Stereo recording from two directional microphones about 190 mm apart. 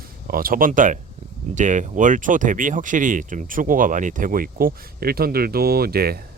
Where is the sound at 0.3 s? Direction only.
50° right (ahead or behind).